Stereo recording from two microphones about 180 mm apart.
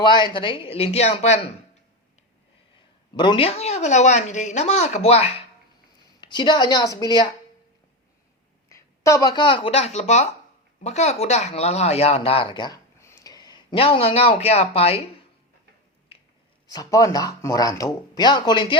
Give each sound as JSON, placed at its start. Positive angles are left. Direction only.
{"t": 0.0, "sound": "speech", "side_deg": 25}
{"t": 3.2, "sound": "speech", "side_deg": 30}
{"t": 8.7, "sound": "speech", "side_deg": 15}
{"t": 16.6, "sound": "speech", "side_deg": 20}